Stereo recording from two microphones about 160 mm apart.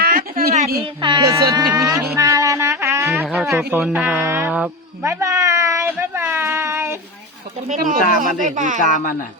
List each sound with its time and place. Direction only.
0.0 s a sound: 70° right (ahead or behind)
1.0 s speech: 25° right (ahead or behind)
7.7 s speech: 55° right (ahead or behind)